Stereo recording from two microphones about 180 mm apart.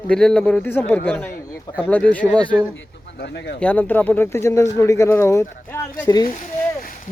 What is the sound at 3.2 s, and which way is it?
Speech, 70° left (ahead or behind).